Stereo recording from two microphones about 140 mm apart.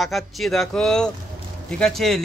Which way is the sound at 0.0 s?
Centre (ahead or behind).